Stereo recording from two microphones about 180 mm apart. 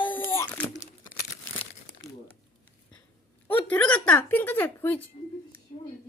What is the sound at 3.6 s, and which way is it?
Speech, 10° left (ahead or behind).